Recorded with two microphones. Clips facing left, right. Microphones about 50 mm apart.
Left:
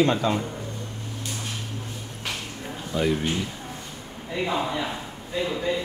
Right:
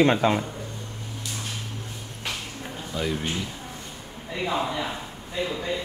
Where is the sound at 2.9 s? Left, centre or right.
Centre.